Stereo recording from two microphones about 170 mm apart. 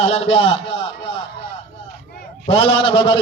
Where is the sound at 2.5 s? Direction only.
35° left (ahead or behind).